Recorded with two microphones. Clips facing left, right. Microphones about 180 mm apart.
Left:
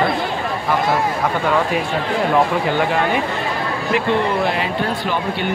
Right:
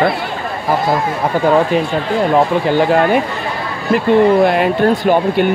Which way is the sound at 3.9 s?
50° right (ahead or behind).